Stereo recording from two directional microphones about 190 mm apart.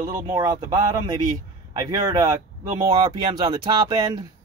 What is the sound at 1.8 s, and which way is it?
Speech, 20° right (ahead or behind).